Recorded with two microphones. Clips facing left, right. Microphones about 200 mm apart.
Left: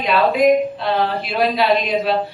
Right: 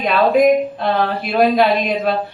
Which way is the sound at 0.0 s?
45° right (ahead or behind).